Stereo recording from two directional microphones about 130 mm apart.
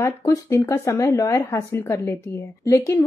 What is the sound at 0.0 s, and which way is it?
Speech, 25° left (ahead or behind).